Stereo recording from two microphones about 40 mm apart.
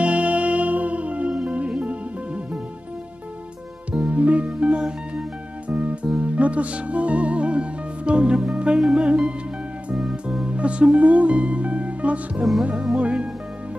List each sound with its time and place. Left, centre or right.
0.0 s music: right
3.9 s music: right
5.7 s music: right
8.7 s music: centre
9.0 s music: right
10.4 s music: right
12.7 s music: centre
13.0 s speech: right